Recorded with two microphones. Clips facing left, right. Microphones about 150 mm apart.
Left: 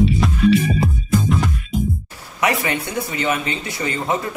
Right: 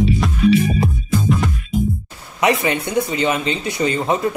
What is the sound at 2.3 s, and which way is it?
Speech, 20° right (ahead or behind).